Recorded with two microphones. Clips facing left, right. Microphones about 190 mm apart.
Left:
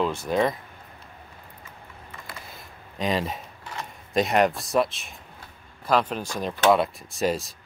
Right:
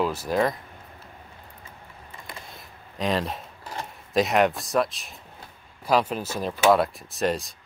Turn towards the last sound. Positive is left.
turn(degrees=0)  # may be behind; listen again after turning